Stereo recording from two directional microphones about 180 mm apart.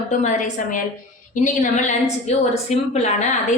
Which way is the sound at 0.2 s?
40° left (ahead or behind).